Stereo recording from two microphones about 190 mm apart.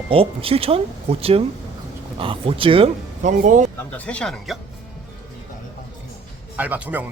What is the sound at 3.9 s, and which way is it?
Speech, 5° left (ahead or behind).